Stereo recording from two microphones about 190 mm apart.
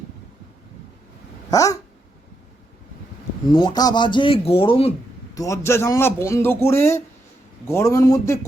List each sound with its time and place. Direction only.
1.5 s dog: 20° left (ahead or behind)
3.5 s speech: 25° left (ahead or behind)
5.3 s a man's voice: 15° left (ahead or behind)